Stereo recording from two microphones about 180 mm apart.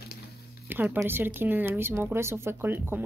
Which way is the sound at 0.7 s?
10° right (ahead or behind).